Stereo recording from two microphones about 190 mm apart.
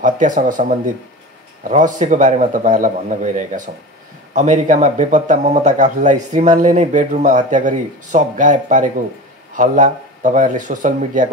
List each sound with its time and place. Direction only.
0.0 s speech: 40° right (ahead or behind)
1.7 s speech: 40° right (ahead or behind)